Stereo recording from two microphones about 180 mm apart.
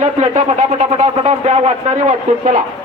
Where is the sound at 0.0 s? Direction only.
40° right (ahead or behind).